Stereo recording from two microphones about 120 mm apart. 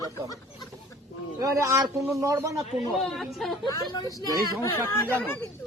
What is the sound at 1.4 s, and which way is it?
Speech, 25° right (ahead or behind).